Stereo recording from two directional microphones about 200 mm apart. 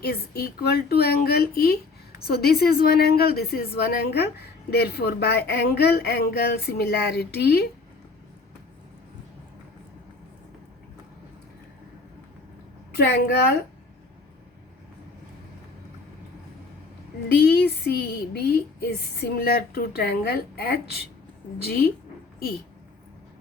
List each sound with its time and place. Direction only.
0.0 s a woman's voice: 50° left (ahead or behind)
17.3 s a woman's voice: 50° left (ahead or behind)